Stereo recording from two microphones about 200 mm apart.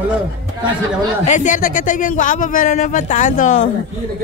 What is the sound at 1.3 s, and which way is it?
Speech, 40° left (ahead or behind).